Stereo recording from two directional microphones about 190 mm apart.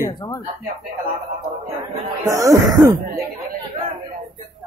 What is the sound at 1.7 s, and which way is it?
Speech, 15° right (ahead or behind).